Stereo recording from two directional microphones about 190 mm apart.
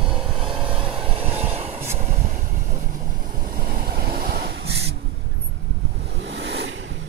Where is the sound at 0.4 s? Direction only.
30° right (ahead or behind).